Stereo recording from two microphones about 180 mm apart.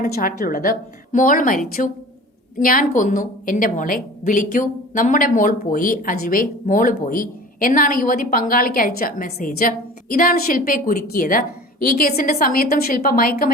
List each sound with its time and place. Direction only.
0.0 s a woman's voice: 55° left (ahead or behind)